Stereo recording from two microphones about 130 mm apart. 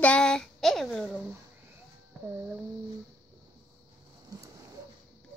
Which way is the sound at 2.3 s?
10° right (ahead or behind).